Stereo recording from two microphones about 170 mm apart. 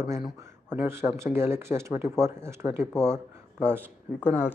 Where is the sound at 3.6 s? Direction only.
10° right (ahead or behind).